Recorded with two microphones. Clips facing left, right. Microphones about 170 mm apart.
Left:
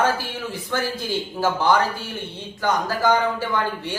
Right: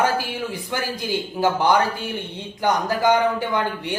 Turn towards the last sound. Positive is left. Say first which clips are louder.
# right 1 dB
turn(degrees=-20)  # may be behind; listen again after turning